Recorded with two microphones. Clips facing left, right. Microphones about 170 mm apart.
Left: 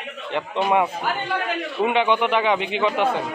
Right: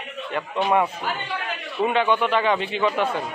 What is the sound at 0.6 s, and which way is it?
Speech, 5° left (ahead or behind).